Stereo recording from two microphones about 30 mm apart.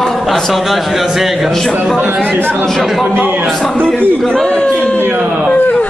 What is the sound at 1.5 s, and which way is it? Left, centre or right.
A man's voice, centre.